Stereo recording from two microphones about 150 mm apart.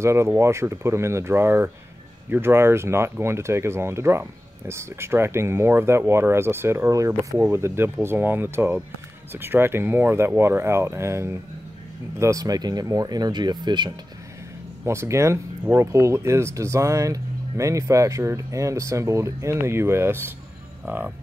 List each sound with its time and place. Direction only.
0.0 s speech: 20° right (ahead or behind)
14.9 s speech: 20° right (ahead or behind)